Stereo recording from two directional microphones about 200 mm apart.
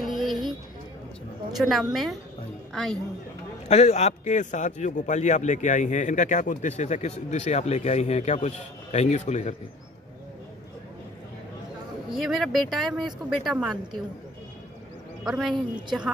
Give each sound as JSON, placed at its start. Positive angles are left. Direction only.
{"t": 0.0, "sound": "music", "side_deg": 0}
{"t": 1.6, "sound": "speech", "side_deg": 0}
{"t": 3.6, "sound": "a man's voice", "side_deg": 35}
{"t": 12.1, "sound": "speech", "side_deg": 0}
{"t": 15.2, "sound": "speech", "side_deg": 0}